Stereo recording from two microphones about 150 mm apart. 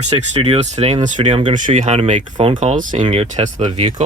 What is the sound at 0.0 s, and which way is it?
Speech, 50° right (ahead or behind).